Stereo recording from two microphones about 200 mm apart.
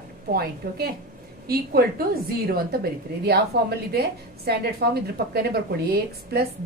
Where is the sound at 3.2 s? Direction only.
50° right (ahead or behind).